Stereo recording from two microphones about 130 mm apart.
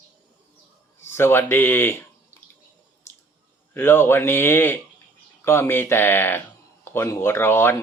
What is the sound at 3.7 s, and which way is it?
Speech, 20° left (ahead or behind).